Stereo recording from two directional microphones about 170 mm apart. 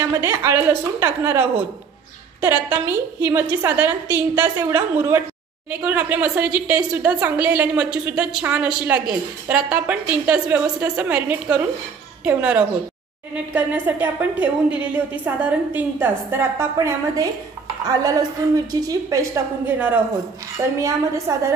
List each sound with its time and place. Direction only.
0.2 s a woman's voice: 15° right (ahead or behind)
21.3 s a woman's voice: 20° right (ahead or behind)